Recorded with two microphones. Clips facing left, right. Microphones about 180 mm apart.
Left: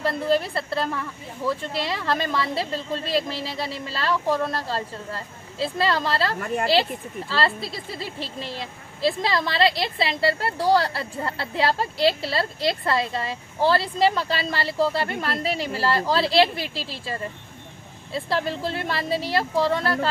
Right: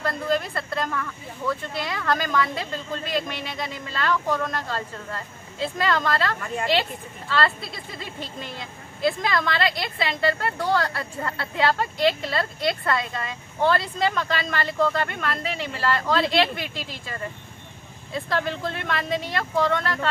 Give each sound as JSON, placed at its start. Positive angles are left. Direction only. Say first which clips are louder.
{"t": 0.0, "sound": "a woman's voice", "louder": "left 3 dB", "side_deg": 30}